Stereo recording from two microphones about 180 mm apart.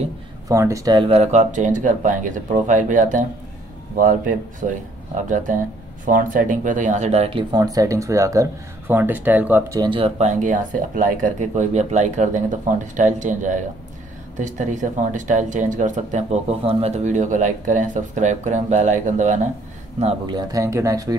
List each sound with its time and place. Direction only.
0.5 s speech: 15° right (ahead or behind); by 19.5 s 40° right (ahead or behind)
20.0 s speech: 30° right (ahead or behind)